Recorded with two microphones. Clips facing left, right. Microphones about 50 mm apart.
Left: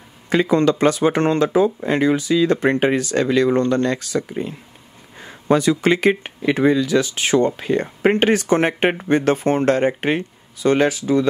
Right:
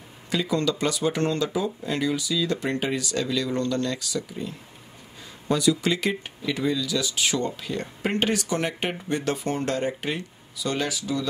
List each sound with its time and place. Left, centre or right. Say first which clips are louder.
0.3 s speech: left 9 dB; left